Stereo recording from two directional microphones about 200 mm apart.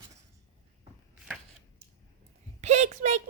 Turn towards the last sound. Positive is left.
turn(degrees=-35)  # may be behind; listen again after turning